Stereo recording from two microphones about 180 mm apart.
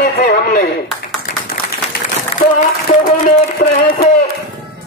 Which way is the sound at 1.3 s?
45° left (ahead or behind).